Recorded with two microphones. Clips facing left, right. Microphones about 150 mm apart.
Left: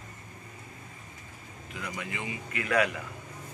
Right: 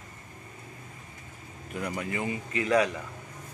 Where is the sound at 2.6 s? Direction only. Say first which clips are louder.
Right 2 dB; 25° right (ahead or behind).